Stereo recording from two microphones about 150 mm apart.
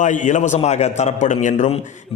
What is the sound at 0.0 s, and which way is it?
A man's voice, 55° left (ahead or behind).